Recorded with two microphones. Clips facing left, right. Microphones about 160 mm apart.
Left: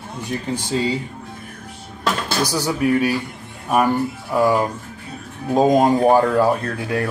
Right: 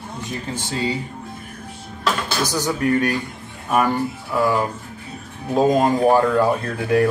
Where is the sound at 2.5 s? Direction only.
10° left (ahead or behind).